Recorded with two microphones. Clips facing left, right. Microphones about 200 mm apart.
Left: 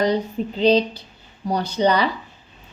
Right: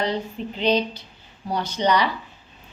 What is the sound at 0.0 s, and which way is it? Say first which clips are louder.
Speech: left 5 dB; 40° left (ahead or behind).